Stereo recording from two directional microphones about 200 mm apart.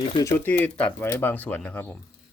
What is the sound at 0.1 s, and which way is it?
Speech, 20° left (ahead or behind).